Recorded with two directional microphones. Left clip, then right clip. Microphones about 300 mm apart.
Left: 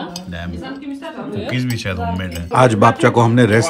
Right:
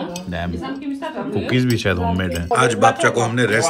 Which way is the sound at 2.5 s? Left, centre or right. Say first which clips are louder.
Left 3 dB; centre.